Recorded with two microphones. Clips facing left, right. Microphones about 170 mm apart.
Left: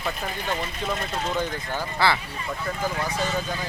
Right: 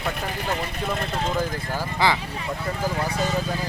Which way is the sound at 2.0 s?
15° right (ahead or behind).